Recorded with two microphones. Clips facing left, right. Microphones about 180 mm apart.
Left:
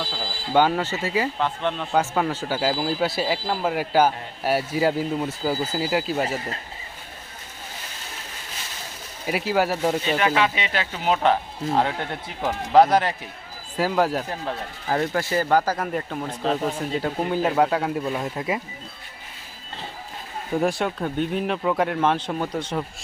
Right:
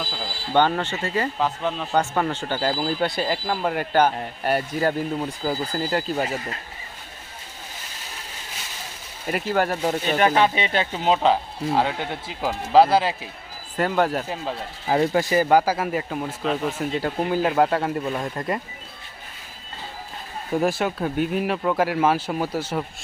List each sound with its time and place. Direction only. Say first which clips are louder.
0.0 s a sound: left 1 dB; centre (ahead or behind)
1.4 s speech: even; 5° right (ahead or behind)
9.2 s speech: even; 5° left (ahead or behind)
10.2 s speech: right 3 dB; 35° right (ahead or behind); by 11.3 s 15° right (ahead or behind)
11.7 s speech: even; centre (ahead or behind)
14.8 s speech: right 4 dB; 20° right (ahead or behind); by 18.6 s centre (ahead or behind)
20.5 s speech: right 1 dB; centre (ahead or behind)